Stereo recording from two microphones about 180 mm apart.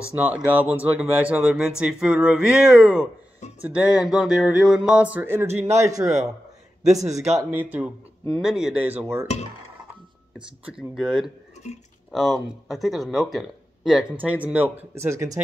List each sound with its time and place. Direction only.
0.1 s speech: 10° right (ahead or behind)
5.6 s speech: 40° right (ahead or behind)
5.9 s speech: 20° right (ahead or behind)
7.1 s speech: 40° right (ahead or behind)
7.3 s speech: 10° right (ahead or behind)
10.3 s speech: 5° right (ahead or behind)